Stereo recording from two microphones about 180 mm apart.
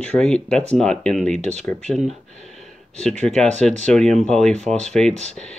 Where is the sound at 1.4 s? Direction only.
40° right (ahead or behind).